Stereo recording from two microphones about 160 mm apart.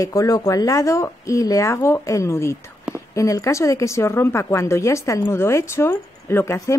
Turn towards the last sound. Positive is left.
turn(degrees=15)  # may be behind; listen again after turning